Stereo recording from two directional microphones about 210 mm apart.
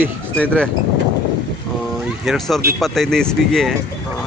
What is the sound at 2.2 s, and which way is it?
Speech, centre (ahead or behind).